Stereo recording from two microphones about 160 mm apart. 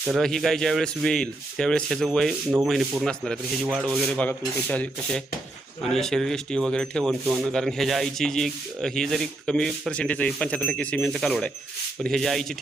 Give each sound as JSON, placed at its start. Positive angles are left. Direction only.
{"t": 0.1, "sound": "speech", "side_deg": 0}